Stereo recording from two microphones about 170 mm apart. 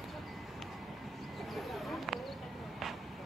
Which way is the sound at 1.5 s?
Centre (ahead or behind).